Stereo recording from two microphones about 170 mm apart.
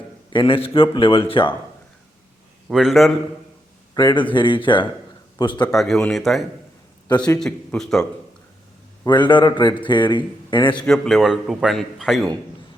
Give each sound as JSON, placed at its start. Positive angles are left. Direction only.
{"t": 0.3, "sound": "speech", "side_deg": 30}
{"t": 2.6, "sound": "a man's voice", "side_deg": 0}
{"t": 3.9, "sound": "a man's voice", "side_deg": 25}
{"t": 5.6, "sound": "a man's voice", "side_deg": 0}
{"t": 9.0, "sound": "a man's voice", "side_deg": 25}
{"t": 10.8, "sound": "a man's voice", "side_deg": 5}